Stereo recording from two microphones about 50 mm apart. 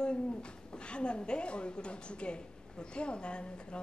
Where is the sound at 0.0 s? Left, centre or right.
Centre.